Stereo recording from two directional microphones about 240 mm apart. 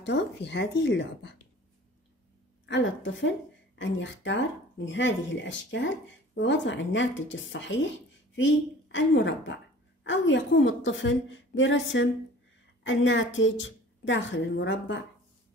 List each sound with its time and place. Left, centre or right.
0.0 s a woman's voice: left
2.7 s a woman's voice: left